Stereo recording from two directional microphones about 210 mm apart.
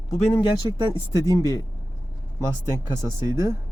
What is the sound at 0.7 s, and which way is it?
Speech, 20° right (ahead or behind).